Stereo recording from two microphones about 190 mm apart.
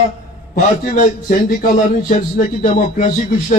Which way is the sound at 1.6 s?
45° left (ahead or behind).